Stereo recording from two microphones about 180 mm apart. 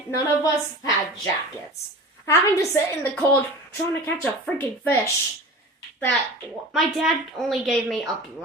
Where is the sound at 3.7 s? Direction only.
10° left (ahead or behind).